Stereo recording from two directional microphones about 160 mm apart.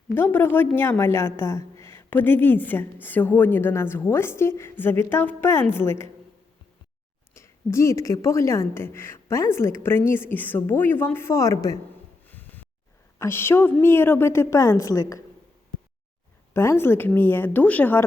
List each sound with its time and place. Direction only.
0.1 s a woman's voice: 15° left (ahead or behind)
7.3 s a woman's voice: 15° left (ahead or behind)
12.2 s a sound: 10° left (ahead or behind)
13.1 s a woman's voice: 15° left (ahead or behind)
16.6 s a woman's voice: 15° left (ahead or behind)